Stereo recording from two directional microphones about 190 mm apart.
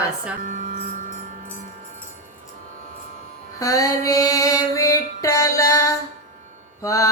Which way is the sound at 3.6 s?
20° left (ahead or behind).